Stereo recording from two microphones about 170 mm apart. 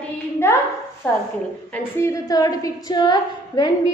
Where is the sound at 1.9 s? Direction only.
15° left (ahead or behind).